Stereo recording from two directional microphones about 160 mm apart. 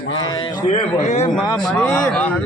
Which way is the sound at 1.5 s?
5° left (ahead or behind).